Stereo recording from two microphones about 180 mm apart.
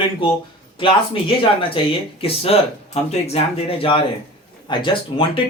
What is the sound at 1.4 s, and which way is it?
Speech, 30° left (ahead or behind).